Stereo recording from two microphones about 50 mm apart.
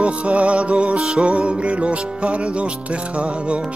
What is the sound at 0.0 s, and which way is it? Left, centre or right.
Music, right.